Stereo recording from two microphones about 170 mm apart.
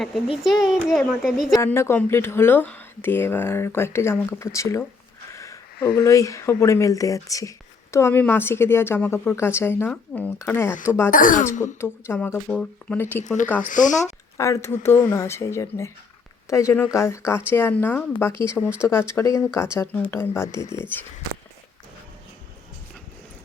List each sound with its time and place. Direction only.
0.4 s a child's voice: centre (ahead or behind)
1.5 s speech: 15° left (ahead or behind)
5.3 s a sound: 15° left (ahead or behind)
6.0 s speech: 20° left (ahead or behind)
11.1 s speech: 50° left (ahead or behind)
11.6 s speech: 15° left (ahead or behind)
13.7 s speech: 50° left (ahead or behind)
14.3 s speech: 15° left (ahead or behind)